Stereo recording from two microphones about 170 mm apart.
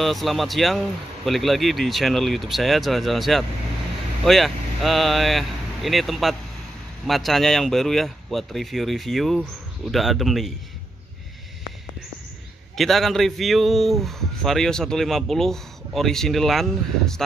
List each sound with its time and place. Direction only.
0.0 s a man's voice: centre (ahead or behind)
12.7 s a man's voice: centre (ahead or behind)